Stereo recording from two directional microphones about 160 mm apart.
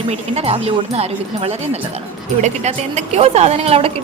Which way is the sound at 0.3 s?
40° right (ahead or behind).